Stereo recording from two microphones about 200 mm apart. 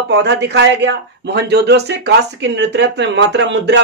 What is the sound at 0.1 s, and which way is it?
A man's voice, 60° right (ahead or behind).